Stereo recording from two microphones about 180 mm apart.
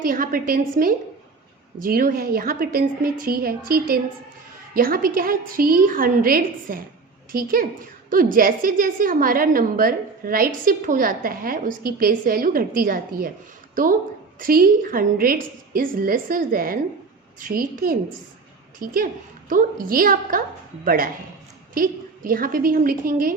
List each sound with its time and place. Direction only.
0.0 s a woman's voice: 50° right (ahead or behind)